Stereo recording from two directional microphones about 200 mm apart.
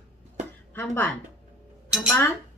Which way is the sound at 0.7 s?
10° left (ahead or behind).